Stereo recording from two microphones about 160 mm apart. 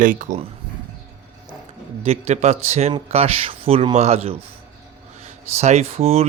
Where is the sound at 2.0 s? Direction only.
45° right (ahead or behind).